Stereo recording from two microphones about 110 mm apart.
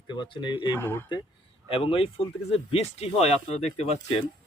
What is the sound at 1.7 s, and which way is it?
Speech, 60° left (ahead or behind).